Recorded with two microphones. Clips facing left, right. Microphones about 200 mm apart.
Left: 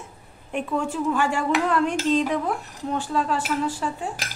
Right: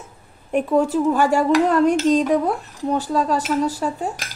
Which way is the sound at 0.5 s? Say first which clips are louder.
Right 8 dB; 40° right (ahead or behind).